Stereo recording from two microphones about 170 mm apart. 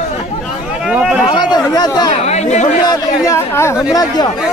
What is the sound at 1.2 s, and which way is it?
Speech, 25° left (ahead or behind).